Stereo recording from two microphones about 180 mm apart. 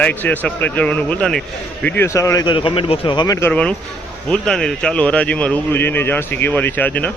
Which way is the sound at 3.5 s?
5° left (ahead or behind).